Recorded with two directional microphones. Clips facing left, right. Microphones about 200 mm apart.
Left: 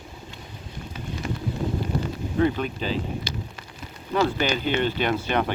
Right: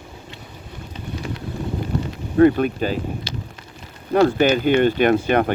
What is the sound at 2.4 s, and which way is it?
Speech, 55° right (ahead or behind).